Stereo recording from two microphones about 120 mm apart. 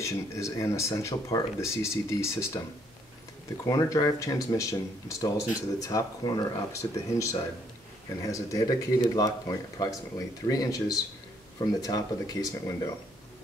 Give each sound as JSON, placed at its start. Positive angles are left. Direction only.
{"t": 0.0, "sound": "speech", "side_deg": 25}
{"t": 3.6, "sound": "speech", "side_deg": 30}